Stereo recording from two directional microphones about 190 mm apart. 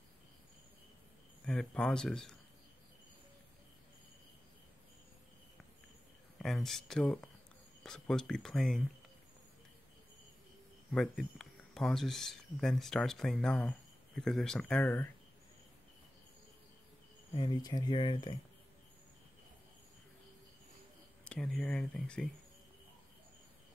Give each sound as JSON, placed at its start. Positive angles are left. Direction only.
{"t": 1.4, "sound": "speech", "side_deg": 5}
{"t": 6.3, "sound": "speech", "side_deg": 0}
{"t": 10.9, "sound": "speech", "side_deg": 0}
{"t": 17.4, "sound": "speech", "side_deg": 20}
{"t": 21.2, "sound": "speech", "side_deg": 5}